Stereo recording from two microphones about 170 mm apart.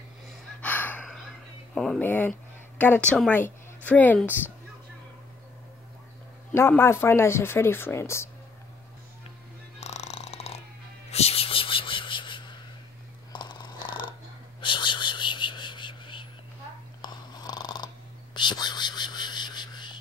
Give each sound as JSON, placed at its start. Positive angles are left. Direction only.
{"t": 0.6, "sound": "gasp", "side_deg": 10}
{"t": 1.8, "sound": "speech", "side_deg": 5}
{"t": 6.5, "sound": "speech", "side_deg": 15}
{"t": 9.8, "sound": "a sound", "side_deg": 40}
{"t": 11.1, "sound": "music", "side_deg": 35}
{"t": 13.3, "sound": "a sound", "side_deg": 25}
{"t": 17.0, "sound": "snoring", "side_deg": 25}
{"t": 18.3, "sound": "whispering", "side_deg": 25}